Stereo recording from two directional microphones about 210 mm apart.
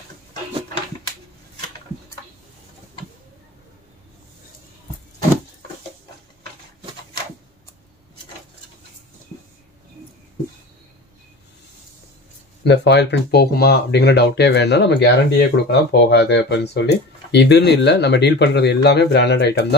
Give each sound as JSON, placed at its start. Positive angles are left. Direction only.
{"t": 12.6, "sound": "speech", "side_deg": 55}